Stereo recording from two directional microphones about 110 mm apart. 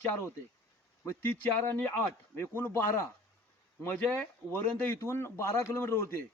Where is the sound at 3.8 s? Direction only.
20° left (ahead or behind).